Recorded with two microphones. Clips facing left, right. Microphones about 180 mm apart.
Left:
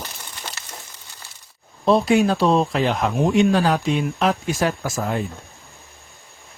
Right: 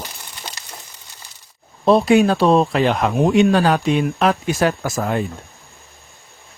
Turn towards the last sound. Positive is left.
turn(degrees=-65)  # may be behind; listen again after turning